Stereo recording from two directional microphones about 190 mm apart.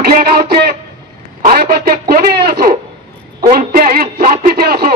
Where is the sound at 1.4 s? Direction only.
50° right (ahead or behind).